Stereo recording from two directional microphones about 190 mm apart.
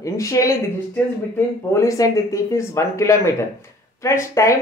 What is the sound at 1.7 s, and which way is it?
Speech, 15° left (ahead or behind).